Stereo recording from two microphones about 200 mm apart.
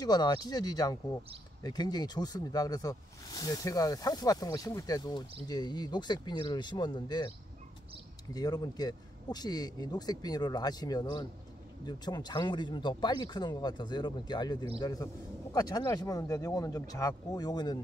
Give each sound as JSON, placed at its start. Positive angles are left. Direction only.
{"t": 0.0, "sound": "speech", "side_deg": 20}
{"t": 8.3, "sound": "speech", "side_deg": 20}